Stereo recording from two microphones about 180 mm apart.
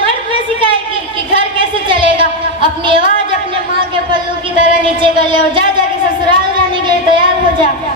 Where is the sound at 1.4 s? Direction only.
30° right (ahead or behind).